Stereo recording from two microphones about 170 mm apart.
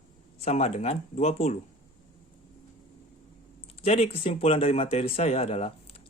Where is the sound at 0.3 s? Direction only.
40° left (ahead or behind).